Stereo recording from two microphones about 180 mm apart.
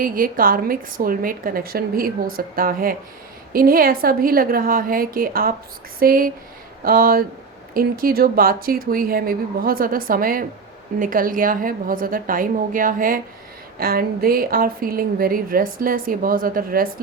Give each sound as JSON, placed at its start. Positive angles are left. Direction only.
{"t": 0.0, "sound": "speech", "side_deg": -50}